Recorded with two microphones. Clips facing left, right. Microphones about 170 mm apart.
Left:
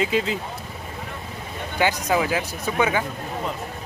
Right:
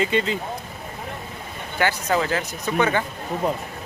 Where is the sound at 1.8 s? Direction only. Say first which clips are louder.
Left 1 dB; 15° left (ahead or behind).